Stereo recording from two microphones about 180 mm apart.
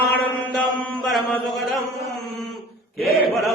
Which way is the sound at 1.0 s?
Centre (ahead or behind).